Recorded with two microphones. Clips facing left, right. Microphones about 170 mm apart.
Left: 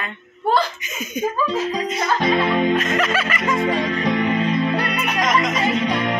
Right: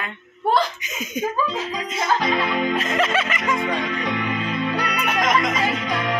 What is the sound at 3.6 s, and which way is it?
Music, 35° left (ahead or behind).